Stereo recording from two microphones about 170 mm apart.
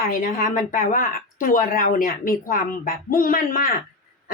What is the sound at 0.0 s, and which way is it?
A woman's voice, 55° left (ahead or behind).